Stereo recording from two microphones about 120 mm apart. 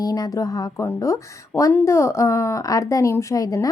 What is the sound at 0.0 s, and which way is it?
A woman's voice, 30° left (ahead or behind).